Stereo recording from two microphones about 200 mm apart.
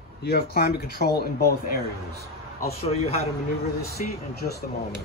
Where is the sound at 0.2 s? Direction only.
50° left (ahead or behind).